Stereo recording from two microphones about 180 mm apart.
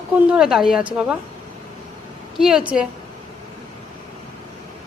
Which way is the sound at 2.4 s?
5° right (ahead or behind).